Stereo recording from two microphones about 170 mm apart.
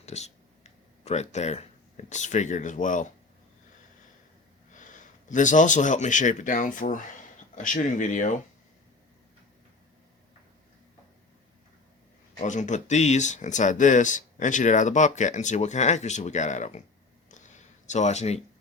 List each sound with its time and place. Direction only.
0.0 s speech: 40° left (ahead or behind)
4.7 s speech: 50° left (ahead or behind)
12.4 s speech: 45° left (ahead or behind)
17.2 s a sound: 45° left (ahead or behind)